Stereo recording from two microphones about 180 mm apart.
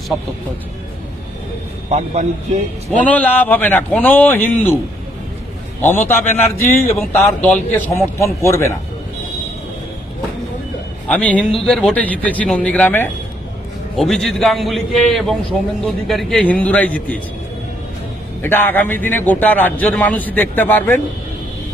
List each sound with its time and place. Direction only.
1.9 s a man's voice: 40° right (ahead or behind)
3.0 s a man's voice: 10° left (ahead or behind)
5.8 s a man's voice: 10° left (ahead or behind)
11.1 s a man's voice: 5° left (ahead or behind)
18.4 s a man's voice: 10° left (ahead or behind)